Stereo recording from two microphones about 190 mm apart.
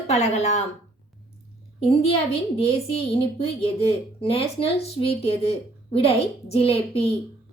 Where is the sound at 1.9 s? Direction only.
30° left (ahead or behind).